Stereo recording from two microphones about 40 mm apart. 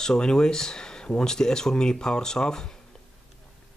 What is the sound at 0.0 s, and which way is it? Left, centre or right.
Speech, centre.